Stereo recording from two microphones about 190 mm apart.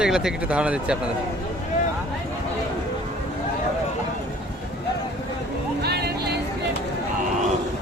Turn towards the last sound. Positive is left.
turn(degrees=-60)  # may be behind; listen again after turning